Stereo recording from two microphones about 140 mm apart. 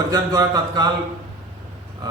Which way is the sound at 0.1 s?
30° right (ahead or behind).